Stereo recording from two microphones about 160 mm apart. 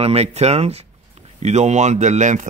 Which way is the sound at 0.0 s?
40° right (ahead or behind).